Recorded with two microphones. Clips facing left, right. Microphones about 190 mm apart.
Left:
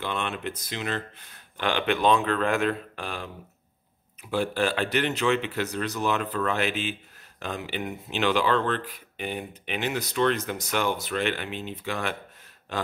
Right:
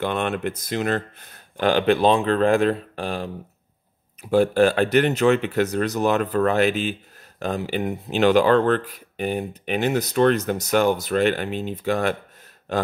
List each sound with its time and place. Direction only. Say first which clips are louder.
0.0 s speech: right 7 dB; 50° right (ahead or behind)